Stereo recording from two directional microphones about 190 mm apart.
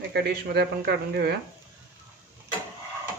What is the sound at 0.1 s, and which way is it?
Speech, 60° right (ahead or behind).